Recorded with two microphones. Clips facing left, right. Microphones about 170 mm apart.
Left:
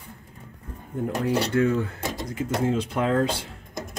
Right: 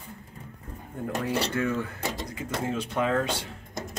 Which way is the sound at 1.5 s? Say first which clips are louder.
Left 6 dB; 30° left (ahead or behind).